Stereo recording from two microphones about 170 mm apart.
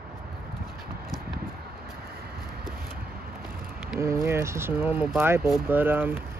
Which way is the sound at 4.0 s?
15° right (ahead or behind).